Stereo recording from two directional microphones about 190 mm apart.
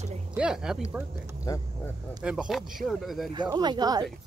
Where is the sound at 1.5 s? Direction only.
20° left (ahead or behind).